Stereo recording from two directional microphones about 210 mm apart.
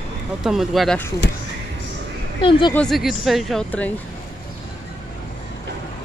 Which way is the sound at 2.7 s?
Centre (ahead or behind).